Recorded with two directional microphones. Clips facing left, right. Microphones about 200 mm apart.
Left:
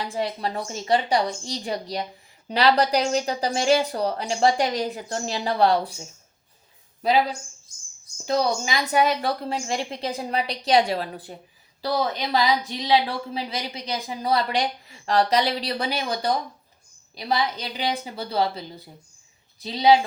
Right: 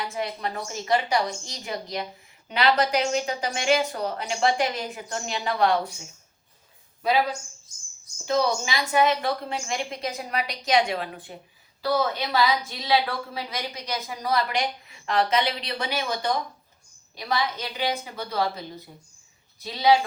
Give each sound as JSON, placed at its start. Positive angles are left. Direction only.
{"t": 0.0, "sound": "speech", "side_deg": 30}
{"t": 8.2, "sound": "speech", "side_deg": 40}
{"t": 12.4, "sound": "speech", "side_deg": 20}
{"t": 13.5, "sound": "speech", "side_deg": 30}
{"t": 19.6, "sound": "speech", "side_deg": 30}